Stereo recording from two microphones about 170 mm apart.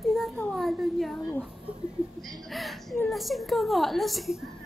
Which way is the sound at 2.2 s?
Centre (ahead or behind).